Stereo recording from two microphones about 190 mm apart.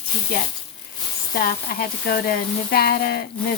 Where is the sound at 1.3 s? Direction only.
50° left (ahead or behind).